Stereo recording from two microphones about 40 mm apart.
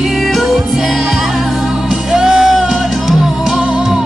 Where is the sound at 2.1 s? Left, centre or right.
Centre.